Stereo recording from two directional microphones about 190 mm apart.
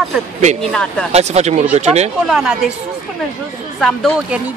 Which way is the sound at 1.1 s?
35° right (ahead or behind).